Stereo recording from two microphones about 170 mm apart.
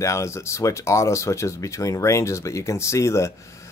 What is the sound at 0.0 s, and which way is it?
Speech, 15° left (ahead or behind).